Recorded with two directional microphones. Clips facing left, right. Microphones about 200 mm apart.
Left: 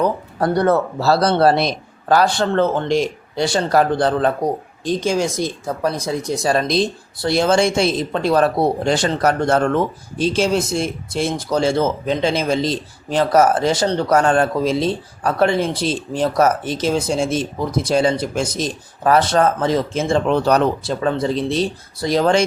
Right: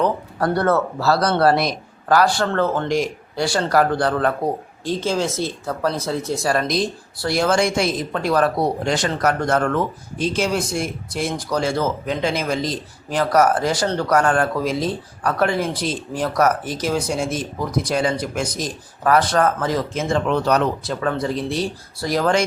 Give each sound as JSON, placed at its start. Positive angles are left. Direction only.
{"t": 0.3, "sound": "speech", "side_deg": 15}
{"t": 0.9, "sound": "speech", "side_deg": 25}